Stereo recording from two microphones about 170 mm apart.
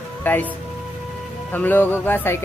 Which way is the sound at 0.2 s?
10° left (ahead or behind).